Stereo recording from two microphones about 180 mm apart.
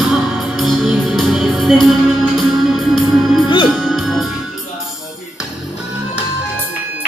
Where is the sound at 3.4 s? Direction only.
25° left (ahead or behind).